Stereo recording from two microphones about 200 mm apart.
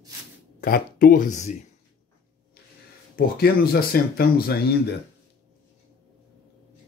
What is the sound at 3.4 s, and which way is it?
Speech, 50° left (ahead or behind).